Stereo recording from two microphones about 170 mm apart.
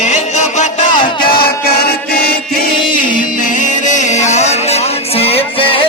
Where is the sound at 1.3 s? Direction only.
65° left (ahead or behind); by 5.4 s 35° left (ahead or behind).